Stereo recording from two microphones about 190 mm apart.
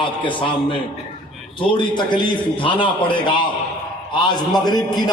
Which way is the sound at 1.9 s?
25° left (ahead or behind).